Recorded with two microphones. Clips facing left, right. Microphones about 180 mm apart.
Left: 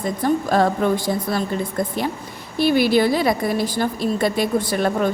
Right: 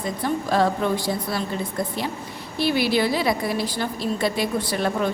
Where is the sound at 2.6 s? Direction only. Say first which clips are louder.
Left 5 dB; 50° left (ahead or behind).